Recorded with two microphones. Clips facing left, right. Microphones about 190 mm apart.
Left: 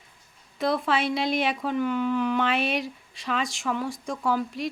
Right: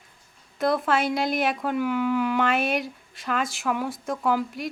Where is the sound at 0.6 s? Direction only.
Centre (ahead or behind).